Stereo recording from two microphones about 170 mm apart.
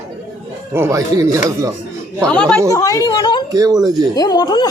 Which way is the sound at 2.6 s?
20° left (ahead or behind).